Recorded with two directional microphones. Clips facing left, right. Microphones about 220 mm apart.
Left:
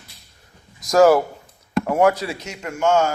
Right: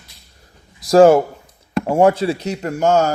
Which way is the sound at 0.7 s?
30° right (ahead or behind).